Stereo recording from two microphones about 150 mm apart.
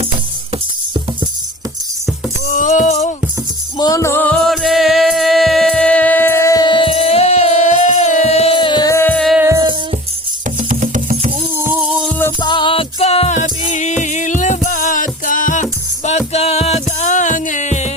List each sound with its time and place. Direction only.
0.5 s music: 35° right (ahead or behind)
2.5 s music: 60° left (ahead or behind)
3.8 s music: 25° left (ahead or behind); by 8.5 s 45° left (ahead or behind)
8.5 s music: 30° left (ahead or behind)
9.1 s music: centre (ahead or behind)
9.4 s music: 20° right (ahead or behind)
10.4 s music: 60° right (ahead or behind)
11.7 s music: 5° right (ahead or behind)
12.4 s music: 30° left (ahead or behind); by 17.9 s 50° left (ahead or behind)